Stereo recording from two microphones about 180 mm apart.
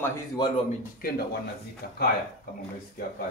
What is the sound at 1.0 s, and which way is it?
Speech, 55° left (ahead or behind).